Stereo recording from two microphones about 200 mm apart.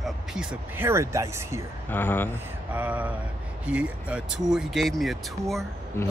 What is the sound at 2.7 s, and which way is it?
Vehicle, 10° right (ahead or behind).